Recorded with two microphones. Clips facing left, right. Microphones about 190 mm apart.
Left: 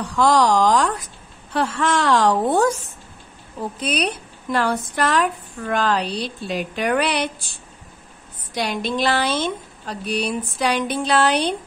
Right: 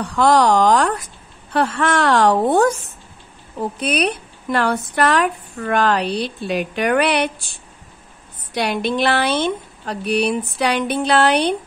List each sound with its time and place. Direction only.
0.1 s a woman's voice: 60° right (ahead or behind)
3.8 s a woman's voice: 60° right (ahead or behind)
8.5 s a woman's voice: 65° right (ahead or behind)